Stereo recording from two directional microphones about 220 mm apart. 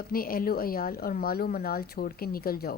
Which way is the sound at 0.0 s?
40° left (ahead or behind).